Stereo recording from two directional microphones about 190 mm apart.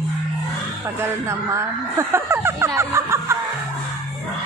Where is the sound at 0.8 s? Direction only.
15° right (ahead or behind).